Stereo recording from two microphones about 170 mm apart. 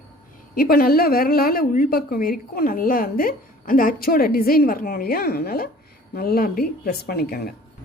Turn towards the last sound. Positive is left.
turn(degrees=65)  # may be behind; listen again after turning